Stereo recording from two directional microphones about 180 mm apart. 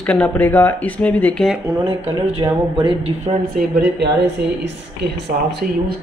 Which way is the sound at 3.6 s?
65° right (ahead or behind).